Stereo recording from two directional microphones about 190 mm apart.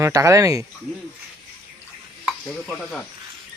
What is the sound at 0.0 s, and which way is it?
Speech, 15° right (ahead or behind).